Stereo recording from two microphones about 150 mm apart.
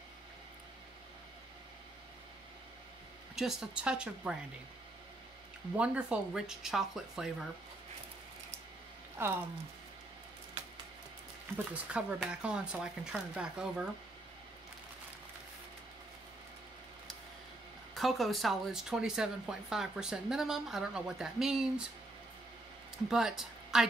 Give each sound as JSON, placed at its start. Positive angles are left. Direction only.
{"t": 3.3, "sound": "speech", "side_deg": 0}
{"t": 5.8, "sound": "speech", "side_deg": -5}
{"t": 9.2, "sound": "speech", "side_deg": -15}
{"t": 11.5, "sound": "speech", "side_deg": -10}
{"t": 17.9, "sound": "speech", "side_deg": 0}
{"t": 23.0, "sound": "a woman's voice", "side_deg": -5}